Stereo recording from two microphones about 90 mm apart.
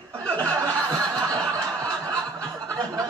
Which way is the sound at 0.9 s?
40° right (ahead or behind).